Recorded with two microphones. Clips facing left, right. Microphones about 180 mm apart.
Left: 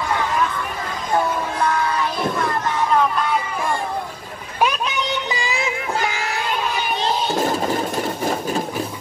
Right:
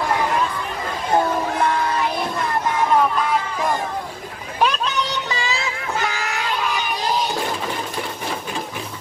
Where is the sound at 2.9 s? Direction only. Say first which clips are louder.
Even; 5° right (ahead or behind).